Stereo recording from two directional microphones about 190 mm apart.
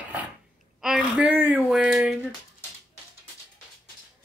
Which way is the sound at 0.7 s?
5° right (ahead or behind).